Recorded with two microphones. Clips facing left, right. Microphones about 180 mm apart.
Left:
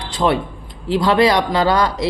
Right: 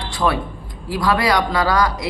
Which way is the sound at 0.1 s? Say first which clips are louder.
Left 3 dB; 20° left (ahead or behind).